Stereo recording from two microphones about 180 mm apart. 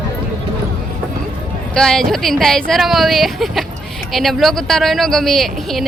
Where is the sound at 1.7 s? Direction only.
5° left (ahead or behind).